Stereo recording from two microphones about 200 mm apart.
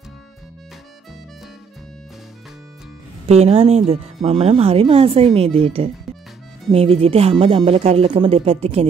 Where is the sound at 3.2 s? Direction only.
30° right (ahead or behind).